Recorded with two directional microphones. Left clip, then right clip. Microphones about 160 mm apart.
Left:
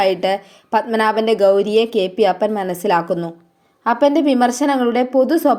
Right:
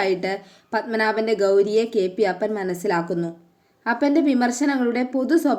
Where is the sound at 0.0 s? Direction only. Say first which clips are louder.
Left 7 dB; 15° left (ahead or behind).